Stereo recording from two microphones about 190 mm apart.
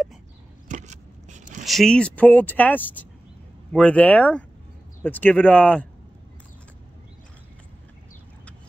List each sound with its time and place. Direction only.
0.7 s vehicle: 40° right (ahead or behind)
1.7 s speech: centre (ahead or behind)